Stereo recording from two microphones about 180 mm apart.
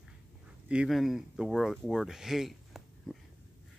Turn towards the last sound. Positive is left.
turn(degrees=0)  # may be behind; listen again after turning